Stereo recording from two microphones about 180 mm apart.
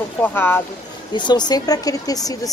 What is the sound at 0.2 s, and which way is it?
Speech, 10° left (ahead or behind).